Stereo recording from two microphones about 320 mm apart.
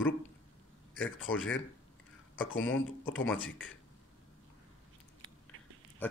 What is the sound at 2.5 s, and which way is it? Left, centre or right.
Speech, left.